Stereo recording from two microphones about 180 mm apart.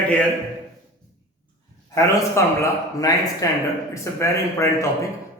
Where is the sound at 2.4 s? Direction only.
15° left (ahead or behind).